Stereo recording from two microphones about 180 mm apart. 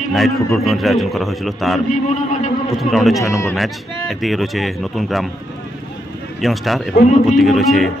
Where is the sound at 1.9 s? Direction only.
40° left (ahead or behind).